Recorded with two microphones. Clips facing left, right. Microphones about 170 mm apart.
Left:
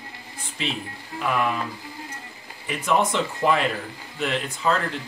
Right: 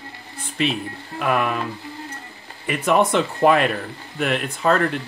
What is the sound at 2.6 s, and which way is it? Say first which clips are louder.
Speech: right 4 dB; 60° right (ahead or behind).